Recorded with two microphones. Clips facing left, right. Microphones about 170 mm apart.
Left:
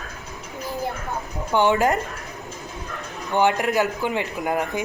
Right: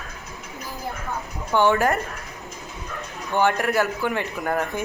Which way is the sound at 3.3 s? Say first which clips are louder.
Left 1 dB; 15° left (ahead or behind).